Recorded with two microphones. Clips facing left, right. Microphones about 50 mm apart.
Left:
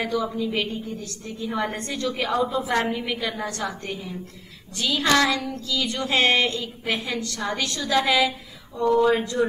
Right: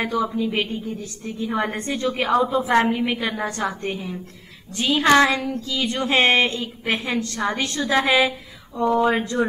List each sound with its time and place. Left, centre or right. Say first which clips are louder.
0.0 s speech: right 3 dB; right
9.1 s speech: right 1 dB; right